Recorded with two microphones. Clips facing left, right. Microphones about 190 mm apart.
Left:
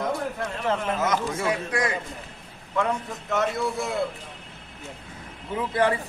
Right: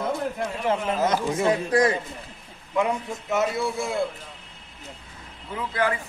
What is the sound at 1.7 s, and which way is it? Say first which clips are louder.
Speech: right 6 dB; 35° right (ahead or behind).